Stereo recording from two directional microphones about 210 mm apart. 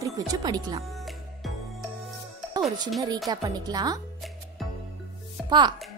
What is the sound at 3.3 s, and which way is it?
Speech, 20° right (ahead or behind).